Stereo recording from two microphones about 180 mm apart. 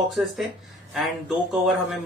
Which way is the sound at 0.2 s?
5° right (ahead or behind).